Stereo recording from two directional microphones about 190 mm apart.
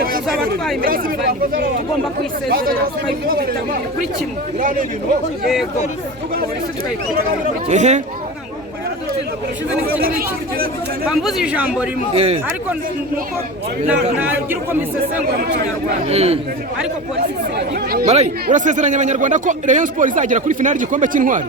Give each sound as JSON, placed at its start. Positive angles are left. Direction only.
{"t": 0.0, "sound": "chatter", "side_deg": -50}
{"t": 0.8, "sound": "speech", "side_deg": -50}
{"t": 2.5, "sound": "speech", "side_deg": -50}
{"t": 7.7, "sound": "speech", "side_deg": -40}
{"t": 10.0, "sound": "speech", "side_deg": -50}
{"t": 11.1, "sound": "speech", "side_deg": 0}
{"t": 12.1, "sound": "speech", "side_deg": -30}
{"t": 13.8, "sound": "speech", "side_deg": -10}
{"t": 16.0, "sound": "speech", "side_deg": -35}
{"t": 18.0, "sound": "speech", "side_deg": -35}